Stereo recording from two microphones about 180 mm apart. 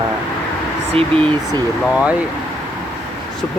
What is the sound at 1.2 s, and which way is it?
Speech, 20° right (ahead or behind).